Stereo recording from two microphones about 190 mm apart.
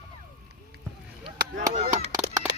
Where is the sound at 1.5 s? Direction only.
45° right (ahead or behind).